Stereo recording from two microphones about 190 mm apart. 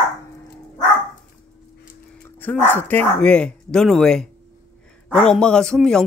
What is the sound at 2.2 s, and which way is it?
A man's voice, 10° left (ahead or behind).